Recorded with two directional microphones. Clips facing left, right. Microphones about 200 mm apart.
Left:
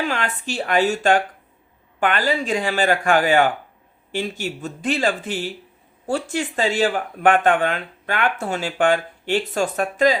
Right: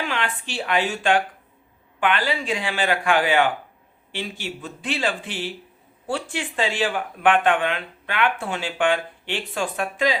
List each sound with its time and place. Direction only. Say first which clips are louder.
0.0 s speech: left 3 dB; 45° left (ahead or behind)